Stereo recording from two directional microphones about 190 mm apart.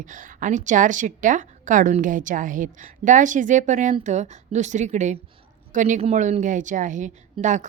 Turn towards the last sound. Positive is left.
turn(degrees=-40)  # may be behind; listen again after turning